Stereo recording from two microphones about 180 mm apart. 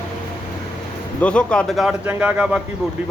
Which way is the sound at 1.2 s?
5° left (ahead or behind).